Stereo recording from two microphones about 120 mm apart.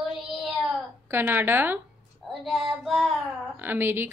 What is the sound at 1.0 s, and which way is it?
Speech, 15° right (ahead or behind).